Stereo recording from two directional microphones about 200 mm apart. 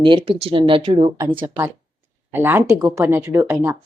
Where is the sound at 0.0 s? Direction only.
25° right (ahead or behind).